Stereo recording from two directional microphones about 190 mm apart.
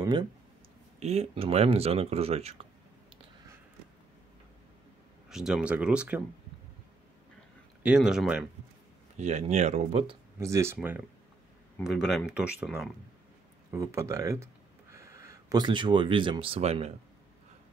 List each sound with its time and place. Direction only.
0.0 s speech: 20° right (ahead or behind)
0.9 s speech: 35° right (ahead or behind)
5.3 s speech: centre (ahead or behind)
7.8 s speech: 5° right (ahead or behind)
9.1 s speech: 40° right (ahead or behind)
10.4 s speech: 15° right (ahead or behind)
11.8 s speech: centre (ahead or behind)
13.7 s speech: 15° right (ahead or behind); by 16.9 s 30° right (ahead or behind)